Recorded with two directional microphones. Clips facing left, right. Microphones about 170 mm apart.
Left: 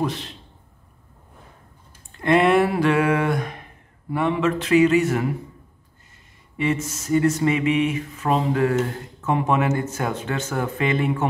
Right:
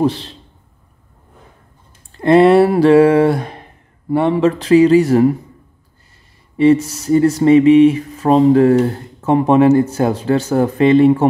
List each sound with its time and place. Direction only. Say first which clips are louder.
0.0 s speech: right 9 dB; 30° right (ahead or behind)
2.1 s speech: right 8 dB; 35° right (ahead or behind)
6.5 s speech: right 12 dB; 35° right (ahead or behind)